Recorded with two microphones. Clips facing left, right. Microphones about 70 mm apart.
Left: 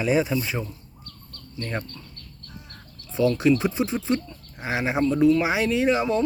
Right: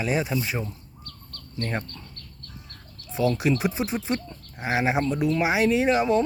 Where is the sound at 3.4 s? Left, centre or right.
Centre.